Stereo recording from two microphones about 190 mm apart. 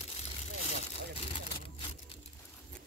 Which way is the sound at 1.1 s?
30° left (ahead or behind).